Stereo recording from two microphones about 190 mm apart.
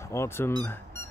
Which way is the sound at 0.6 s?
10° left (ahead or behind).